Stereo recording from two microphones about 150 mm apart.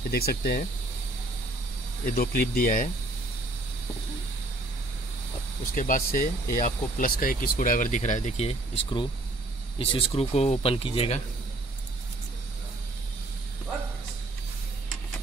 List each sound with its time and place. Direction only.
0.1 s speech: 90° left
2.0 s speech: 85° left; by 2.9 s 65° left (ahead or behind)
5.8 s speech: 65° left (ahead or behind); by 11.1 s 40° left (ahead or behind)